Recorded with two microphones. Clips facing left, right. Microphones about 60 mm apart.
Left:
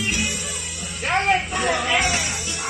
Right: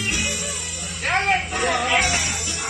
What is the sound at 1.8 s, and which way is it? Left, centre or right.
Music, centre.